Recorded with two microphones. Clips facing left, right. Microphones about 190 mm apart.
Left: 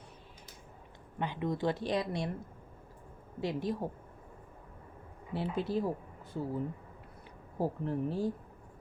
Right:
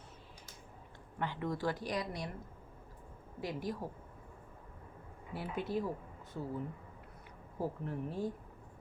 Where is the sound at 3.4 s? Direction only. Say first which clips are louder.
Left 5 dB; 25° left (ahead or behind).